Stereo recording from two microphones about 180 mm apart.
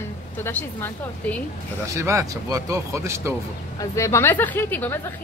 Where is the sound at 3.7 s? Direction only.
15° left (ahead or behind).